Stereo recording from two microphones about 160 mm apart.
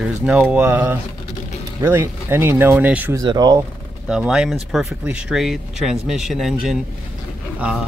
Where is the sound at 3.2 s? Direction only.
25° right (ahead or behind).